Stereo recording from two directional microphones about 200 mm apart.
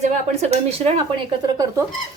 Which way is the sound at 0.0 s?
35° right (ahead or behind).